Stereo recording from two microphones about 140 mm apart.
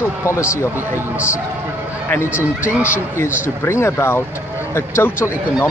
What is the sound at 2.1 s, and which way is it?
Speech, 15° left (ahead or behind).